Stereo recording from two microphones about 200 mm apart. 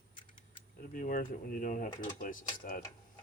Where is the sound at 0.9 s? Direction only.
45° left (ahead or behind).